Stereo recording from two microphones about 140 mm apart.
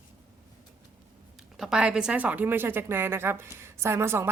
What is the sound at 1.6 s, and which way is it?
Speech, 5° right (ahead or behind).